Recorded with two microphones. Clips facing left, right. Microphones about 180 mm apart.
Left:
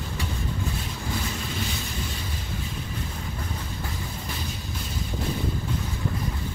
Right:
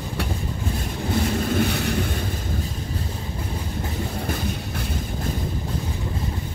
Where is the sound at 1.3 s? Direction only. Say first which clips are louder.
Right 10 dB; 55° right (ahead or behind).